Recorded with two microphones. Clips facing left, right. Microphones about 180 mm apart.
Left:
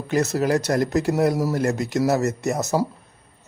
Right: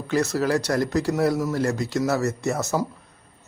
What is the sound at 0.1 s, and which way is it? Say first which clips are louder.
Speech: left 1 dB; 20° left (ahead or behind).